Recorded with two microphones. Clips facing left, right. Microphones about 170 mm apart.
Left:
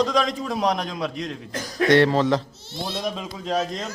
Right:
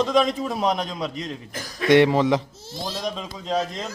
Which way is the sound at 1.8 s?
15° right (ahead or behind).